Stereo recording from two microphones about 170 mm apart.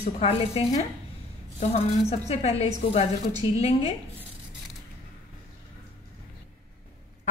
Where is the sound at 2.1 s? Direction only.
40° left (ahead or behind).